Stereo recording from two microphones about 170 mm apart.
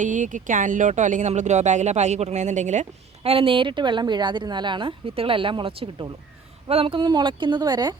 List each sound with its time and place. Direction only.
0.0 s speech: 50° right (ahead or behind)
3.2 s a woman's voice: 30° right (ahead or behind)